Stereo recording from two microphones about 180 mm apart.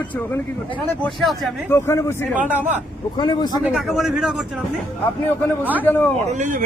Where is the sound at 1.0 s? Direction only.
Centre (ahead or behind).